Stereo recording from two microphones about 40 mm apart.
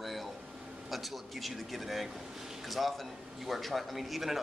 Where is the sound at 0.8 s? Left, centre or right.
Centre.